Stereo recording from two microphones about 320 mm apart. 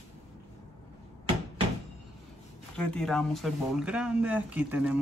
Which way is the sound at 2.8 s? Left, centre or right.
Centre.